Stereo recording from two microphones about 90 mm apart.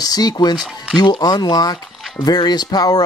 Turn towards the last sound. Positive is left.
turn(degrees=45)  # may be behind; listen again after turning